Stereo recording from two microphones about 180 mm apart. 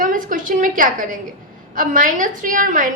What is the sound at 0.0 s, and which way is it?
A woman's voice, 45° right (ahead or behind).